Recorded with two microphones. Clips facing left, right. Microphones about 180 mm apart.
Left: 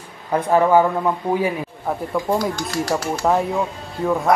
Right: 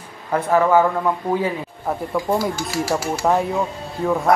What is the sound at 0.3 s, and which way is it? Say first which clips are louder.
Speech: left 1 dB; 20° left (ahead or behind).